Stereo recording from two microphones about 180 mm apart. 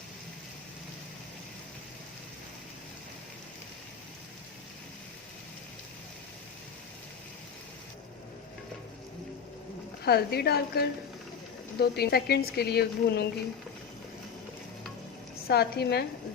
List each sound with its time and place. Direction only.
10.0 s a woman's voice: 60° left (ahead or behind)
15.4 s a woman's voice: 60° left (ahead or behind)